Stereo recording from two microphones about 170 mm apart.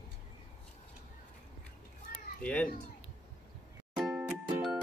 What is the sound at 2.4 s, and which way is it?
Speech, 10° left (ahead or behind).